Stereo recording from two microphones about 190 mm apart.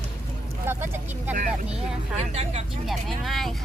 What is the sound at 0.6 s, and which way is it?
Speech, 10° right (ahead or behind).